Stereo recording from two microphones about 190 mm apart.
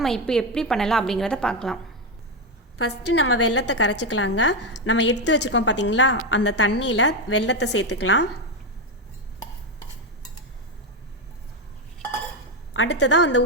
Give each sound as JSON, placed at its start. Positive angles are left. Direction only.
{"t": 0.0, "sound": "a woman's voice", "side_deg": 5}
{"t": 2.7, "sound": "a woman's voice", "side_deg": 80}
{"t": 12.7, "sound": "a woman's voice", "side_deg": 80}